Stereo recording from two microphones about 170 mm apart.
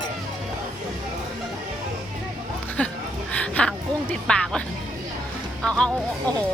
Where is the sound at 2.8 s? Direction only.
10° left (ahead or behind).